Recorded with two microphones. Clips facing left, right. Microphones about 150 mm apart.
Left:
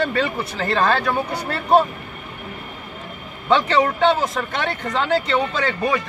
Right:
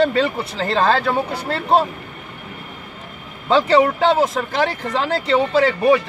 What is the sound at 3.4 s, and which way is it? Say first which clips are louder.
Speech: right 2 dB; 30° right (ahead or behind).